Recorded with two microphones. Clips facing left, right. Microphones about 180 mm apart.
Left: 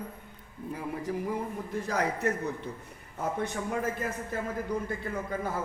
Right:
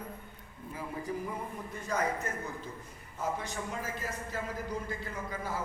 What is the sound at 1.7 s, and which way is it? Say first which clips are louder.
Speech: left 2 dB; 85° left.